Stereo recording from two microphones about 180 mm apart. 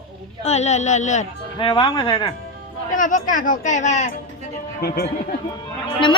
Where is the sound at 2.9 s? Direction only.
45° left (ahead or behind).